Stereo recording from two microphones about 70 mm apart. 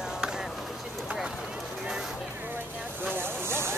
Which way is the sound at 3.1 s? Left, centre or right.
Right.